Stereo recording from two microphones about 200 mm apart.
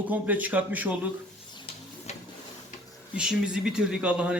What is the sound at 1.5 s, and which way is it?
Printer, 30° left (ahead or behind).